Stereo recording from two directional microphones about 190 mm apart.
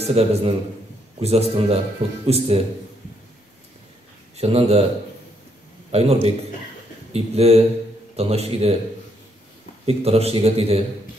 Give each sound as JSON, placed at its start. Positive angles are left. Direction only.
{"t": 0.0, "sound": "a man's voice", "side_deg": -35}
{"t": 4.4, "sound": "a man's voice", "side_deg": -30}
{"t": 5.9, "sound": "a man's voice", "side_deg": -35}
{"t": 9.8, "sound": "a man's voice", "side_deg": -35}